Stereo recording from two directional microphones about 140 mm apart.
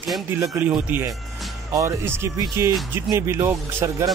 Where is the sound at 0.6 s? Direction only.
10° right (ahead or behind).